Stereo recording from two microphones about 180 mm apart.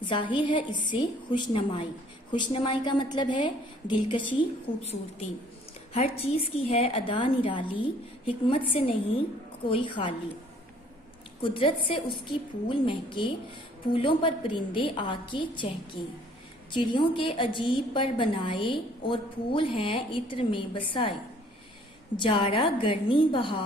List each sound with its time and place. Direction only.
0.0 s a woman's voice: 25° left (ahead or behind)
11.4 s a woman's voice: 30° left (ahead or behind)